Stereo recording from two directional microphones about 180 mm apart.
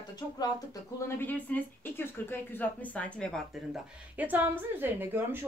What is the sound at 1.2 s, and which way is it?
Speech, 10° left (ahead or behind).